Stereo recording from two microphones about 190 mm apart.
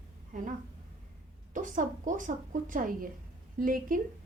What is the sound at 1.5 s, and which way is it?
A woman's voice, 45° right (ahead or behind).